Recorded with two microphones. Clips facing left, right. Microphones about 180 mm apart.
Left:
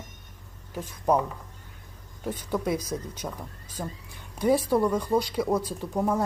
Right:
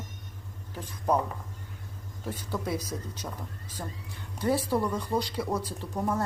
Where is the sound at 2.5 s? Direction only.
15° left (ahead or behind).